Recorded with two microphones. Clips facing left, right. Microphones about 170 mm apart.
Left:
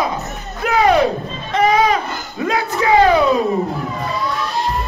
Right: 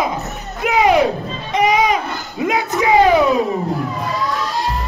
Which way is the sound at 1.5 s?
15° right (ahead or behind).